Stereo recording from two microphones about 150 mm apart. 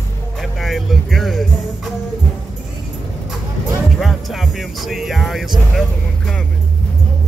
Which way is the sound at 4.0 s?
Centre (ahead or behind).